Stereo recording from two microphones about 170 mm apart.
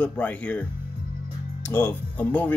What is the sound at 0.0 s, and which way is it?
Speech, 10° left (ahead or behind).